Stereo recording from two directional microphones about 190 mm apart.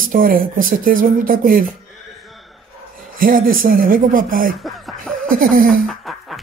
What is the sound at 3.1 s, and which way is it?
Speech, 50° right (ahead or behind).